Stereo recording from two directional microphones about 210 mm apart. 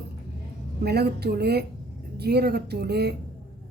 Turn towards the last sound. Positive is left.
turn(degrees=-50)  # may be behind; listen again after turning